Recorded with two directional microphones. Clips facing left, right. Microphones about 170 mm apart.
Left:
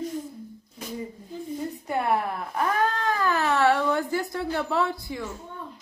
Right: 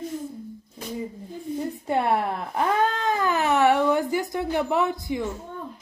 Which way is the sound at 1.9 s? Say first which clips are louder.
Right 2 dB; 25° right (ahead or behind).